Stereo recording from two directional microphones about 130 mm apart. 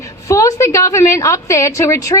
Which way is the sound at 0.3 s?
25° left (ahead or behind).